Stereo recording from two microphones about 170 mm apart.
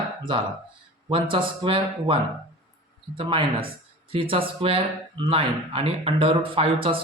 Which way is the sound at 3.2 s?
30° right (ahead or behind).